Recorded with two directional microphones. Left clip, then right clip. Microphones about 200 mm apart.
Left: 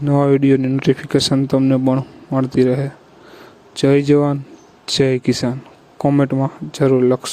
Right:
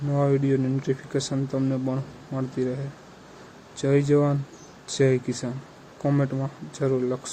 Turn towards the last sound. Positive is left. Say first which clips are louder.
# left 11 dB
turn(degrees=45)  # may be behind; listen again after turning